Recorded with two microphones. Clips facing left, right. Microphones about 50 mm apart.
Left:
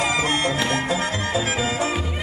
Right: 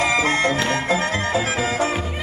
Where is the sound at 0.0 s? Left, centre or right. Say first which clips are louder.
Right 3 dB; right.